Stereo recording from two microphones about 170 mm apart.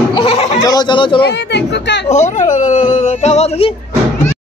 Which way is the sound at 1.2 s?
85° left.